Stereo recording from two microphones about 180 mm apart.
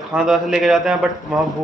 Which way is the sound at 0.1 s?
Centre (ahead or behind).